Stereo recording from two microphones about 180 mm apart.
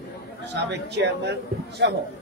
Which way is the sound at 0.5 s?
70° right (ahead or behind).